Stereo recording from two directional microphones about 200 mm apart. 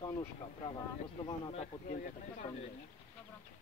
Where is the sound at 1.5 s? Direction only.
40° left (ahead or behind).